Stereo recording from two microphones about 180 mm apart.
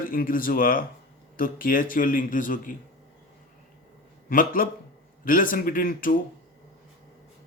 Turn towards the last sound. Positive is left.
turn(degrees=50)  # may be behind; listen again after turning